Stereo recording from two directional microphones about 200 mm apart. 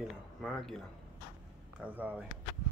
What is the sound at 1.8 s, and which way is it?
Speech, 5° right (ahead or behind).